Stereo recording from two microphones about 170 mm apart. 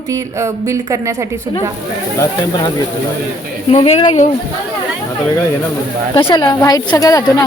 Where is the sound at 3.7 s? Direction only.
35° left (ahead or behind).